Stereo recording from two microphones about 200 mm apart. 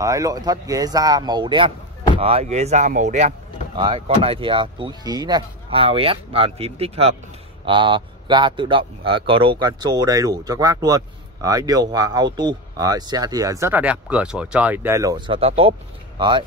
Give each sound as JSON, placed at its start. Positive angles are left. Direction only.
{"t": 0.0, "sound": "speech", "side_deg": -15}
{"t": 3.7, "sound": "speech", "side_deg": -25}